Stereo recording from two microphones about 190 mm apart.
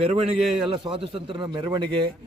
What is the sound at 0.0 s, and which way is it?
A man's voice, 30° right (ahead or behind).